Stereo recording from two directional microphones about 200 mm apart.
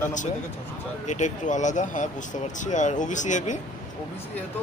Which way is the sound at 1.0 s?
35° left (ahead or behind).